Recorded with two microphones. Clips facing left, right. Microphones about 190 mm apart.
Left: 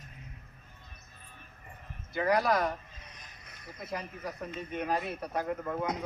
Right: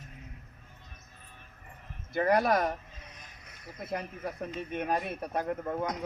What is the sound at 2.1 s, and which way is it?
Speech, 50° right (ahead or behind).